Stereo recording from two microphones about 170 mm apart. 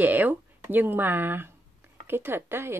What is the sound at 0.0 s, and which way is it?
Speech, 10° right (ahead or behind).